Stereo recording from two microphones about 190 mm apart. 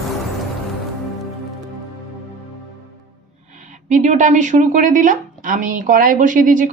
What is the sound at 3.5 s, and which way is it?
A woman's voice, 40° right (ahead or behind).